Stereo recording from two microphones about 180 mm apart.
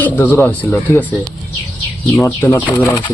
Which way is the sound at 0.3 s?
10° left (ahead or behind).